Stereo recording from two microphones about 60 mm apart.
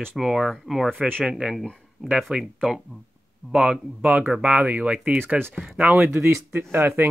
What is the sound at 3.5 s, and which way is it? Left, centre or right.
Speech, centre.